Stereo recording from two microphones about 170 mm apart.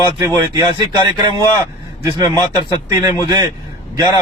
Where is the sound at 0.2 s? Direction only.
20° right (ahead or behind).